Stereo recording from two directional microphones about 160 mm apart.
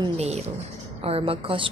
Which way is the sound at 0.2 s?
45° right (ahead or behind).